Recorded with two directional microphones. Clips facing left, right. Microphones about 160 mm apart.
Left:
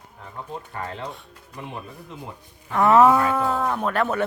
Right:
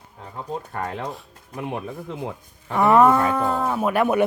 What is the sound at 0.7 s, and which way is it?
Speech, 50° right (ahead or behind).